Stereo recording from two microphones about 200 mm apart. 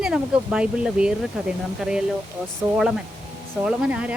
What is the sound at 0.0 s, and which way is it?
Speech, 5° right (ahead or behind).